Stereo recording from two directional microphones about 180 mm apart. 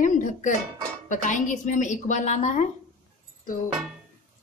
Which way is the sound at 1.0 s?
45° left (ahead or behind).